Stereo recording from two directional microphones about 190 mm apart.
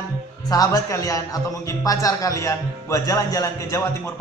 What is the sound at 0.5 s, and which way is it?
Speech, 20° left (ahead or behind).